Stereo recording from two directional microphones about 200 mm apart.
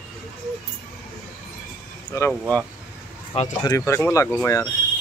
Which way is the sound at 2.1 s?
15° left (ahead or behind).